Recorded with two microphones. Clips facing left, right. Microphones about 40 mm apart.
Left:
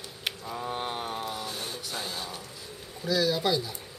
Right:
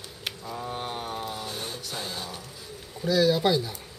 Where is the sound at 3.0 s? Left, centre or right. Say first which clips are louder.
Right 4 dB; centre.